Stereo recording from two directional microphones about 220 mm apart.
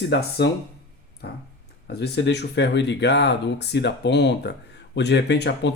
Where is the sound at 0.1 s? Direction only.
50° left (ahead or behind).